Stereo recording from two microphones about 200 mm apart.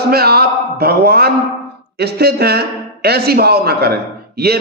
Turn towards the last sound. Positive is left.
turn(degrees=-55)  # may be behind; listen again after turning